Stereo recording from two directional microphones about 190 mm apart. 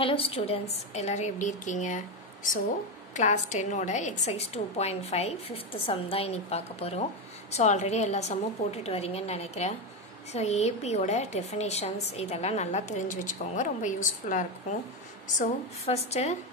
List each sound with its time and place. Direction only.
0.0 s a woman's voice: 30° left (ahead or behind)